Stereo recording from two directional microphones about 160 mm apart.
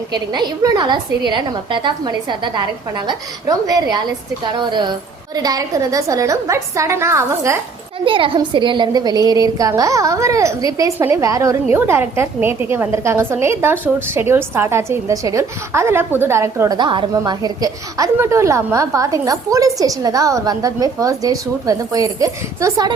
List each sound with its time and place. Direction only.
0.1 s a woman's voice: 25° right (ahead or behind)
8.0 s a woman's voice: 35° right (ahead or behind)